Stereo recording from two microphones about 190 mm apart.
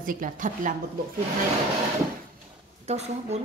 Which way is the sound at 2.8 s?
35° right (ahead or behind).